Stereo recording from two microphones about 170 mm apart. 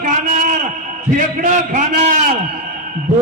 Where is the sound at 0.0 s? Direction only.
50° right (ahead or behind).